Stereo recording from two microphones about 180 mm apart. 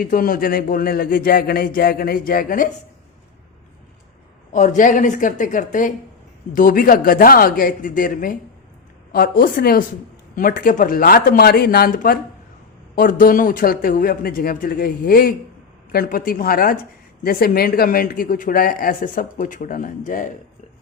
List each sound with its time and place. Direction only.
0.0 s speech: 50° left (ahead or behind)
4.5 s speech: 45° left (ahead or behind)